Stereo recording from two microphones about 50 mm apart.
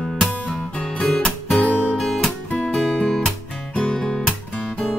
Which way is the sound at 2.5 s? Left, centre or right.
Left.